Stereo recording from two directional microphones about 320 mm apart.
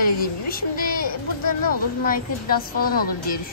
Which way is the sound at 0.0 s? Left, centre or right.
Left.